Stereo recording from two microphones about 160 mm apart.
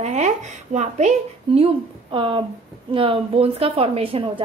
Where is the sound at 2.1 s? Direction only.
30° right (ahead or behind).